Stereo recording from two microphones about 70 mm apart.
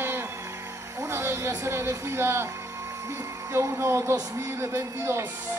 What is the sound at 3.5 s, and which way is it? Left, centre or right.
Speech, right.